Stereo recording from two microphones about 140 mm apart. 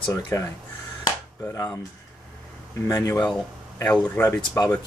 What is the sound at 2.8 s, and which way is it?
Speech, 25° left (ahead or behind).